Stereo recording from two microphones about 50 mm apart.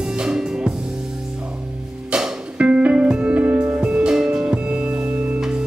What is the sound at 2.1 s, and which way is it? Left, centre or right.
Music, right.